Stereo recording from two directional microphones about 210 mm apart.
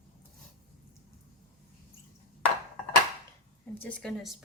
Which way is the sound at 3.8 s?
5° left (ahead or behind).